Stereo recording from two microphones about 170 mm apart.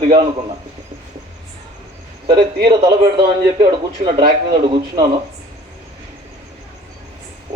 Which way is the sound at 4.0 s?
55° right (ahead or behind).